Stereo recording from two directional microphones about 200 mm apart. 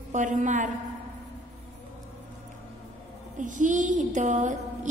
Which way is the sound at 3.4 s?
40° right (ahead or behind).